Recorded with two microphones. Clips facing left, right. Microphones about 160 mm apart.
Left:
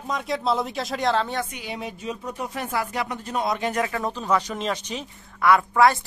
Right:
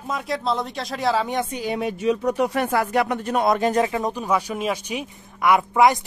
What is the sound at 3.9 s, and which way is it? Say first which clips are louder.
Speech: right 2 dB; 20° right (ahead or behind).